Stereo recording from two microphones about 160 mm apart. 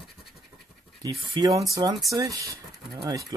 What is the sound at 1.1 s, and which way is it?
Speech, 30° right (ahead or behind).